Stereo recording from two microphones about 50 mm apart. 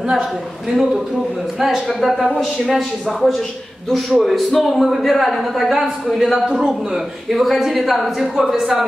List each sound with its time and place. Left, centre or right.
0.0 s a man's voice: centre